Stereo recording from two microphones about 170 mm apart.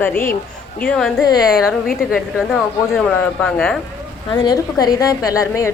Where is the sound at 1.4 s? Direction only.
65° left (ahead or behind).